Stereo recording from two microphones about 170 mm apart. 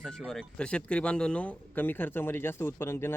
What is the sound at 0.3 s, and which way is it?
Speech, 5° left (ahead or behind).